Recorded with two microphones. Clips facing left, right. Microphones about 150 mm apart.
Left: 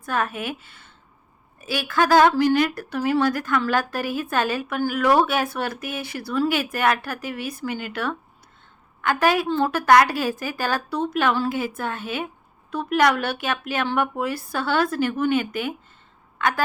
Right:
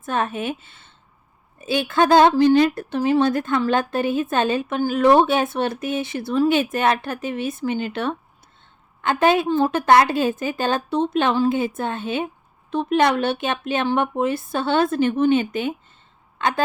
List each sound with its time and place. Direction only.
0.0 s a woman's voice: 25° right (ahead or behind)